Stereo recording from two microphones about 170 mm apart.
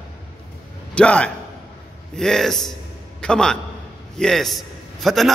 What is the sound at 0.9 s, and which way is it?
A man's voice, 5° left (ahead or behind).